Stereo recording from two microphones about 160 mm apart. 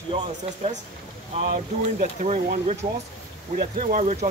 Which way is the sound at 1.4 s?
65° right (ahead or behind).